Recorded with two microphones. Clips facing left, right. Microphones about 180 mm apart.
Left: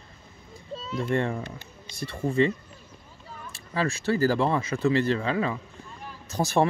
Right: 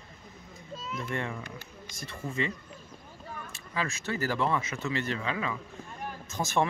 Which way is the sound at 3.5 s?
35° left (ahead or behind).